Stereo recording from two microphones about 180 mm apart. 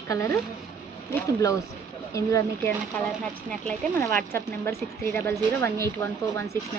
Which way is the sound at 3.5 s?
5° left (ahead or behind).